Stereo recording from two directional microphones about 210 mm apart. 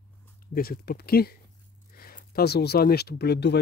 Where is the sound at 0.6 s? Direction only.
50° left (ahead or behind).